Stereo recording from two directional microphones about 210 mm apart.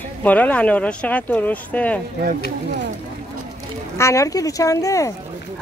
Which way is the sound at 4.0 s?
15° left (ahead or behind).